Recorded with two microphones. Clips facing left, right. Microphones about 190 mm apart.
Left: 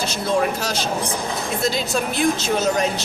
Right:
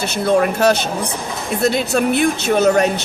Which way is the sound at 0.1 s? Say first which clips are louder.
Right 7 dB; 60° right (ahead or behind).